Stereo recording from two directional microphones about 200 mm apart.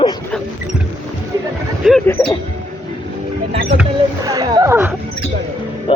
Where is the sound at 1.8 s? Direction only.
5° left (ahead or behind).